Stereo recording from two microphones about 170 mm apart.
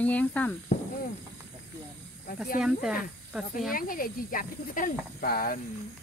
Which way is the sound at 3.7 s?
55° left (ahead or behind).